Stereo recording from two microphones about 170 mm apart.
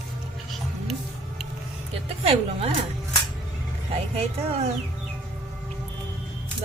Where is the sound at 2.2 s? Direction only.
35° right (ahead or behind).